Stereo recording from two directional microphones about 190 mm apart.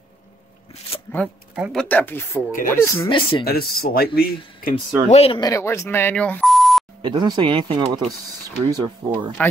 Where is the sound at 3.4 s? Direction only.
55° left (ahead or behind).